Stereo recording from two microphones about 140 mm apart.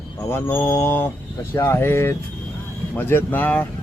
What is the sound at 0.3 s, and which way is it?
Speech, 15° left (ahead or behind).